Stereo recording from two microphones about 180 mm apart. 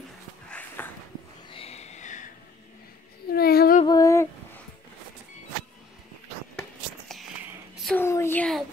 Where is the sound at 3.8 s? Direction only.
20° left (ahead or behind).